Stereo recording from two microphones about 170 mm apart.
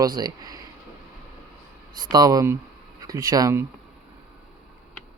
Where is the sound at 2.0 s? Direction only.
20° right (ahead or behind).